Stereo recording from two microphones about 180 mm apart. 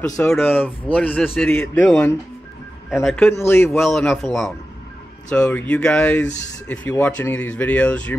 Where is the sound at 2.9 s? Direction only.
Centre (ahead or behind).